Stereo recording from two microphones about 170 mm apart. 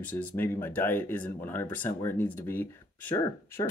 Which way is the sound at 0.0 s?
10° left (ahead or behind).